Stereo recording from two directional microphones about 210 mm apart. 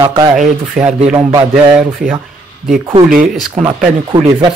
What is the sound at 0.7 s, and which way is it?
Speech, 5° right (ahead or behind).